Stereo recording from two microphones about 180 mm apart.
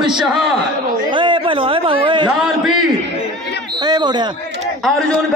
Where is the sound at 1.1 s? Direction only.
25° right (ahead or behind).